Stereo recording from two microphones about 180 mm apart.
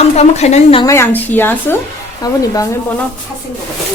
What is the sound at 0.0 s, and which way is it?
Speech, 35° left (ahead or behind).